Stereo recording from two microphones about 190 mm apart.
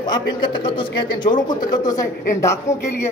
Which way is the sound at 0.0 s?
20° left (ahead or behind).